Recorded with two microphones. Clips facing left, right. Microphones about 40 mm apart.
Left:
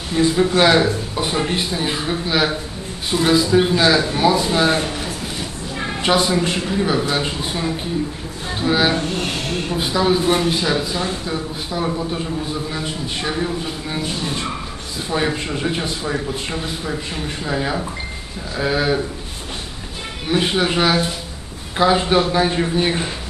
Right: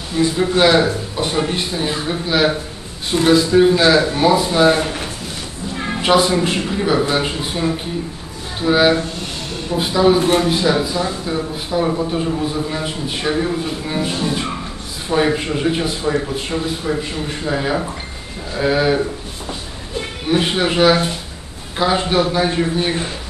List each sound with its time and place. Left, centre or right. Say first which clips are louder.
0.2 s speech: even; left
0.6 s speech: right 3 dB; centre
3.4 s a man's voice: right 4 dB; centre
3.7 s a man's voice: right 2 dB; centre
4.8 s speech: right 1 dB; right
6.0 s a man's voice: right 3 dB; centre
9.1 s a sound: left 4 dB; left
9.8 s a man's voice: right 5 dB; centre
20.2 s speech: right 1 dB; centre